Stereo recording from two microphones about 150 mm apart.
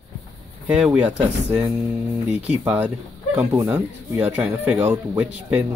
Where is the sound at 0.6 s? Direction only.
10° right (ahead or behind).